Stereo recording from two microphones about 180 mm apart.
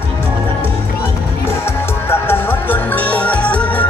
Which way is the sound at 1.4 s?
15° left (ahead or behind).